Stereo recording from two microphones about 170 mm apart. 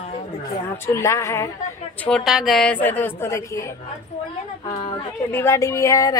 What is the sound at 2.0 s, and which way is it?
A woman's voice, centre (ahead or behind).